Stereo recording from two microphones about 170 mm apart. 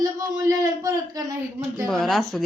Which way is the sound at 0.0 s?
20° right (ahead or behind).